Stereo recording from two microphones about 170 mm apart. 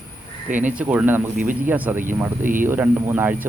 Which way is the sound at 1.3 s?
50° right (ahead or behind).